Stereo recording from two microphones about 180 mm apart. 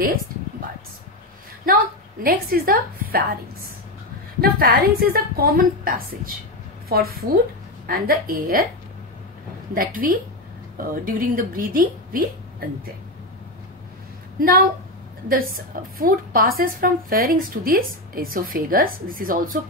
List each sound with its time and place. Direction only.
2.2 s a woman's voice: 55° right (ahead or behind)
4.4 s a woman's voice: 55° right (ahead or behind)
9.8 s a woman's voice: 55° right (ahead or behind)
15.2 s a woman's voice: 50° right (ahead or behind)